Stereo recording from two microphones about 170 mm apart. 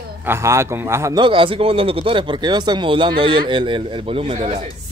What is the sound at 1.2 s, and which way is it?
Speech, 30° right (ahead or behind).